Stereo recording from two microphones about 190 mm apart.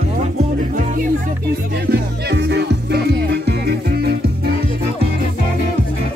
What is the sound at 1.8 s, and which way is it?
Music, 60° right (ahead or behind).